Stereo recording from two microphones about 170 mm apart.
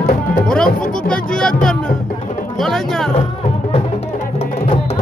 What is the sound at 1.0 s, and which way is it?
Speech, 5° left (ahead or behind).